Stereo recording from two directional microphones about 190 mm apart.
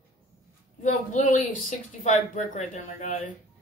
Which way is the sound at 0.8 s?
40° left (ahead or behind).